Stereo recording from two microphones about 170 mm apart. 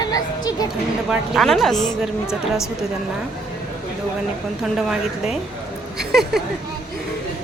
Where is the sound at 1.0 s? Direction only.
Centre (ahead or behind).